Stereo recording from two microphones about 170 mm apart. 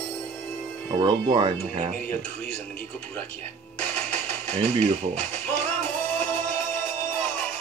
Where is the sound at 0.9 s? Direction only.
25° right (ahead or behind).